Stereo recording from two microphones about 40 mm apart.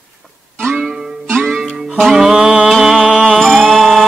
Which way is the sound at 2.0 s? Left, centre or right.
Centre.